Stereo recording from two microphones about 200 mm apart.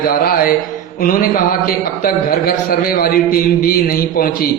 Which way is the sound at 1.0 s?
45° left (ahead or behind).